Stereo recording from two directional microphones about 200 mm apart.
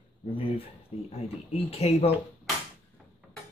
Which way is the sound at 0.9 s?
30° left (ahead or behind).